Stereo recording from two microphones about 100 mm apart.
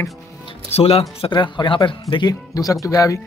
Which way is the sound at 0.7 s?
80° left.